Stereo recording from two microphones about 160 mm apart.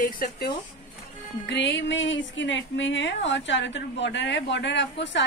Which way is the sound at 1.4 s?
90° left.